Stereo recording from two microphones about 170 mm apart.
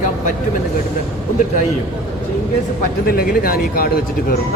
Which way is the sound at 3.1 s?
60° left (ahead or behind).